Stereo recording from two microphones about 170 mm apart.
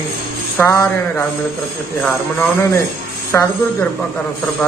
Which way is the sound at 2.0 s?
10° left (ahead or behind).